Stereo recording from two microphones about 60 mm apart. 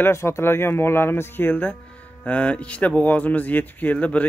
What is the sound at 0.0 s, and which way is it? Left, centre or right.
Speech, left.